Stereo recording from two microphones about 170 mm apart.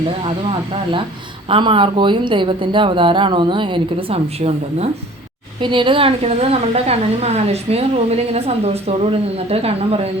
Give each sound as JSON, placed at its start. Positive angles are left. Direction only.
{"t": 1.5, "sound": "a woman's voice", "side_deg": -30}